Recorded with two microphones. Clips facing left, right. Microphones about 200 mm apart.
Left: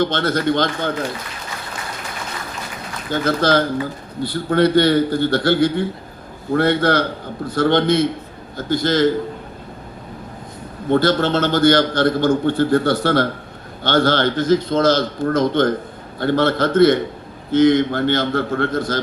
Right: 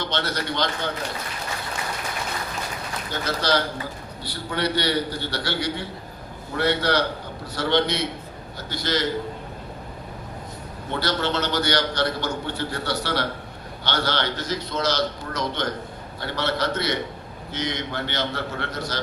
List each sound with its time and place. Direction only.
0.0 s a man's voice: 50° left (ahead or behind)
3.1 s a man's voice: 50° left (ahead or behind)
10.8 s a man's voice: 50° left (ahead or behind)